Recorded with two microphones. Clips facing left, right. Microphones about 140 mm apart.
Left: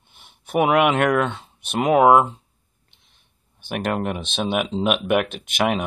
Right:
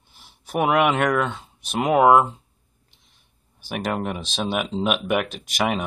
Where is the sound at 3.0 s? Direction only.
5° right (ahead or behind).